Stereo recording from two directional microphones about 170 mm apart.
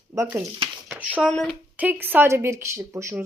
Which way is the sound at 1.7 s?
10° right (ahead or behind).